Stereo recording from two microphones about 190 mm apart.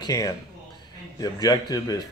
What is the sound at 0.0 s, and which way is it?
Speech, 20° left (ahead or behind).